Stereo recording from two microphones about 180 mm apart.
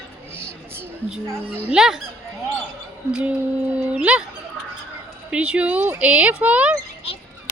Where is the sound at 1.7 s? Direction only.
5° right (ahead or behind).